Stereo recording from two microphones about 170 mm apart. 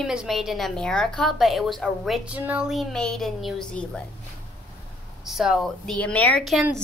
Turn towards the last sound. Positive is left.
turn(degrees=0)  # may be behind; listen again after turning